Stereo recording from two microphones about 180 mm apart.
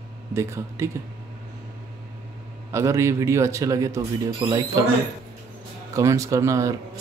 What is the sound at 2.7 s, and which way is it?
Speech, 15° right (ahead or behind).